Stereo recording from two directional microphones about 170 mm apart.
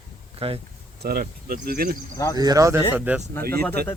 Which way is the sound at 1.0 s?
65° right (ahead or behind).